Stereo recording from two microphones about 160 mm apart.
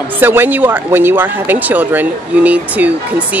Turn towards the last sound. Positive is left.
turn(degrees=-10)  # may be behind; listen again after turning